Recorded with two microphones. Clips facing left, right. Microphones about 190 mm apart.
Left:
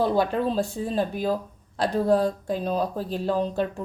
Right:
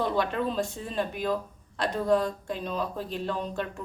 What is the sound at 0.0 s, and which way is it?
A woman's voice, 35° left (ahead or behind).